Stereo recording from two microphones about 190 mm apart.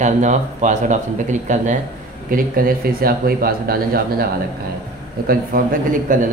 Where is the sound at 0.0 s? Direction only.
40° right (ahead or behind).